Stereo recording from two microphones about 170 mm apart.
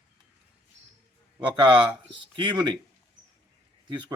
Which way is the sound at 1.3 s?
25° right (ahead or behind).